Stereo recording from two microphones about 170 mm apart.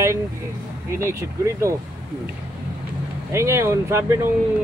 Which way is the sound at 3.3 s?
15° right (ahead or behind).